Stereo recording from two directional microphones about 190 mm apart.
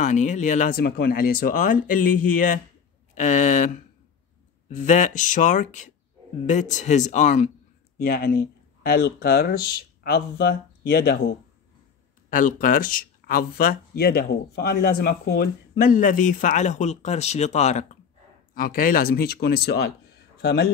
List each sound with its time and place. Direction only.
0.0 s speech: 40° left (ahead or behind)
0.8 s speech: 55° left (ahead or behind)
8.0 s speech: 50° left (ahead or behind)